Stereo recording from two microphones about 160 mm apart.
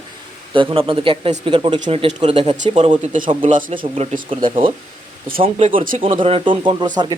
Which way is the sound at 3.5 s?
55° right (ahead or behind).